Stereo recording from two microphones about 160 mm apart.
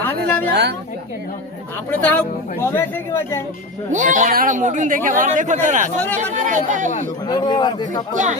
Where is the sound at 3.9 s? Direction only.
50° right (ahead or behind).